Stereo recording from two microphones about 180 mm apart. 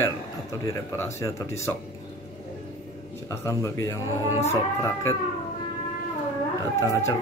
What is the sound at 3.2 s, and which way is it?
Speech, 15° left (ahead or behind).